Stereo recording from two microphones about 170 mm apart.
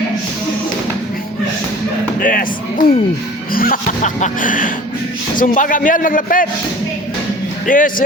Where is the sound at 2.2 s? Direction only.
55° left (ahead or behind).